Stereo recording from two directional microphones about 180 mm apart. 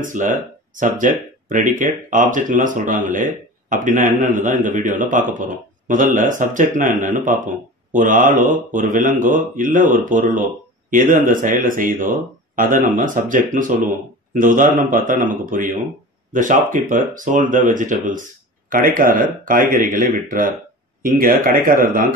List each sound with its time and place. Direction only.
0.0 s speech: 45° right (ahead or behind)